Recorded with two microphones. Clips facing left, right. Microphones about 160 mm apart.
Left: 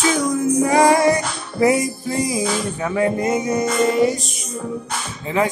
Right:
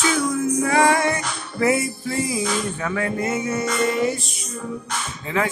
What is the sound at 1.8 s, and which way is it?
Music, 40° left (ahead or behind).